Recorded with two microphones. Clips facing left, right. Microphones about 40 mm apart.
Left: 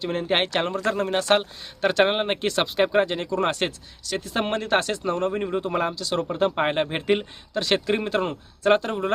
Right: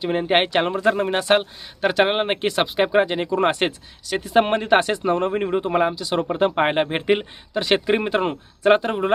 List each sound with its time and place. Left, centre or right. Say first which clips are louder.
0.0 s speech: right 4 dB; centre